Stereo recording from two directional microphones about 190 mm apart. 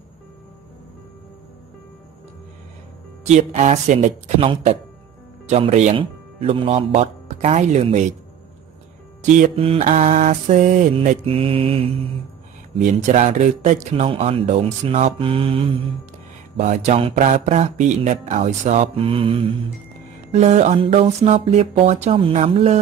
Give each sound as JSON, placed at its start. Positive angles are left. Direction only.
{"t": 3.3, "sound": "speech", "side_deg": -35}
{"t": 9.2, "sound": "speech", "side_deg": -40}